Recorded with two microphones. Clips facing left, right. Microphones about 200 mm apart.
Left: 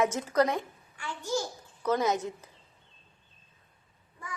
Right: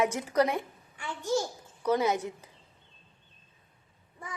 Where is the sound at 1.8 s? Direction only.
15° right (ahead or behind).